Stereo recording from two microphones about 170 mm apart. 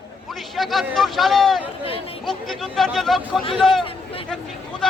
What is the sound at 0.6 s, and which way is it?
Speech, centre (ahead or behind).